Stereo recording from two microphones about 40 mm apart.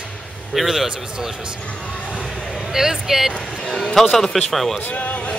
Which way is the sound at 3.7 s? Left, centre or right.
Centre.